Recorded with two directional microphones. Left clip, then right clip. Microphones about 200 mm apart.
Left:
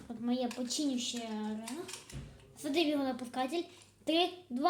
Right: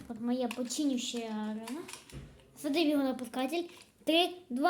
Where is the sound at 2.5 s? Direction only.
30° right (ahead or behind).